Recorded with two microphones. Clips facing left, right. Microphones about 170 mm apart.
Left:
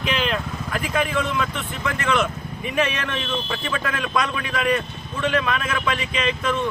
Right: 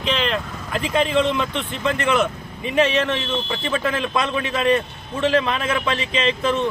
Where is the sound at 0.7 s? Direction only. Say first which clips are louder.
Right 4 dB; 25° right (ahead or behind).